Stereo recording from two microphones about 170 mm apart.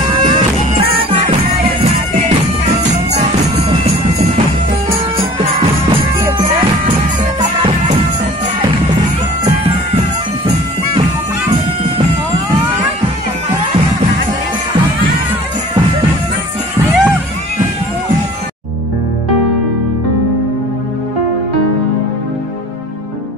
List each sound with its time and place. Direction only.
1.1 s music: 45° right (ahead or behind)
5.1 s music: 35° right (ahead or behind)
16.8 s music: 10° right (ahead or behind)